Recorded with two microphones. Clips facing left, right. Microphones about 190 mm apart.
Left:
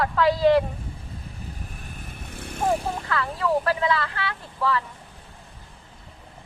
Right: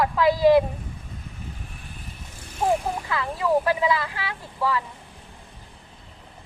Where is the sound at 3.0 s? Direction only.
10° right (ahead or behind).